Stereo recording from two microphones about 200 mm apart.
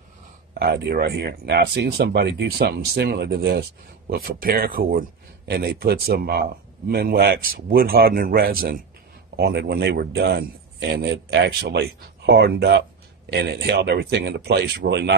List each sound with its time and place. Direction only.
0.6 s a man's voice: 50° right (ahead or behind)